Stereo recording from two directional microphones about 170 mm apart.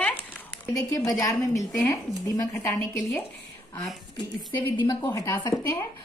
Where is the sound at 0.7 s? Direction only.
20° left (ahead or behind).